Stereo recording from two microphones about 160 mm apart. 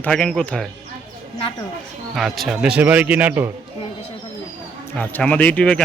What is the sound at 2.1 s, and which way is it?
Speech, centre (ahead or behind).